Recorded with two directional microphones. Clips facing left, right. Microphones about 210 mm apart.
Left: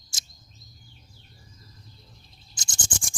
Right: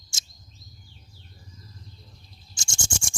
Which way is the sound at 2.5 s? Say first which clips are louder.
Right 2 dB; 25° right (ahead or behind).